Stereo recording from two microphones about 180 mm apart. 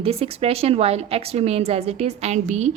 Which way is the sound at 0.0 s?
35° right (ahead or behind).